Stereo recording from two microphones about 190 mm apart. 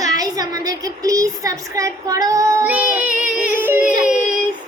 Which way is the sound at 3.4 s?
10° right (ahead or behind).